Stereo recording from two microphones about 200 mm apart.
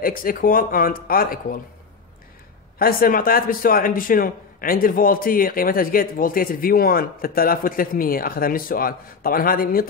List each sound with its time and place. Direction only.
0.0 s a man's voice: 45° left (ahead or behind)
2.8 s a man's voice: 45° left (ahead or behind)